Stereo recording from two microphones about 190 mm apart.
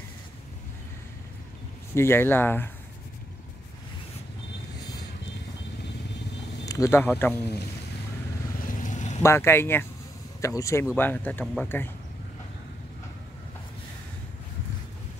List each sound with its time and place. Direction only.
2.0 s speech: 10° left (ahead or behind)
6.6 s speech: 15° left (ahead or behind)
8.5 s vehicle: 45° left (ahead or behind)
9.2 s speech: 15° left (ahead or behind)